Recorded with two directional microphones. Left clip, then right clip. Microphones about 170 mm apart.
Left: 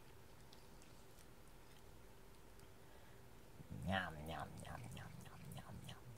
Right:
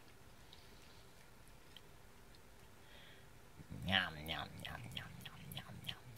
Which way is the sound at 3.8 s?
15° right (ahead or behind).